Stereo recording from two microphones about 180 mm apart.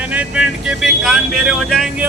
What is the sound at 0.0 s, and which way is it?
Speech, 5° right (ahead or behind).